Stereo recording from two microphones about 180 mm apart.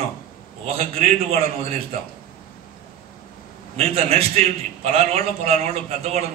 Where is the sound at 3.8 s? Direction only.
35° right (ahead or behind).